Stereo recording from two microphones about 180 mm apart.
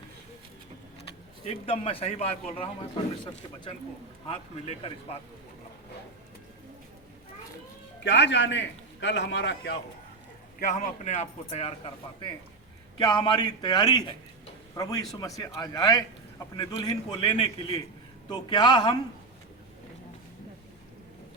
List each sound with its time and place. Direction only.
1.5 s a man's voice: 30° left (ahead or behind)
4.3 s a man's voice: 35° left (ahead or behind)
8.0 s a man's voice: 80° left
10.6 s a man's voice: 45° left (ahead or behind)
13.0 s a man's voice: 25° left (ahead or behind)